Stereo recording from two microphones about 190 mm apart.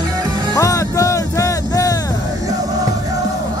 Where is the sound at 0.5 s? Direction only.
15° left (ahead or behind).